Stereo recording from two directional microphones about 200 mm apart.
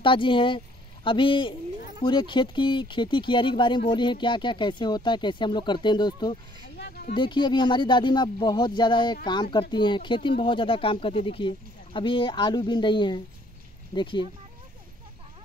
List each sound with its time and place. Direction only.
0.0 s speech: 25° left (ahead or behind)
6.8 s a sound: 45° left (ahead or behind)
7.1 s speech: 25° left (ahead or behind)